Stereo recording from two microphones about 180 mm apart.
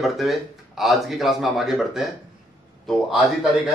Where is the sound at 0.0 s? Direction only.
Centre (ahead or behind).